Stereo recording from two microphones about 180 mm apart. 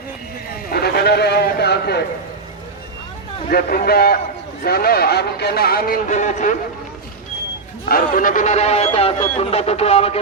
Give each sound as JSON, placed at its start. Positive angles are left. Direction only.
{"t": 0.7, "sound": "a sound", "side_deg": 60}
{"t": 3.5, "sound": "speech", "side_deg": 55}
{"t": 7.9, "sound": "speech", "side_deg": 50}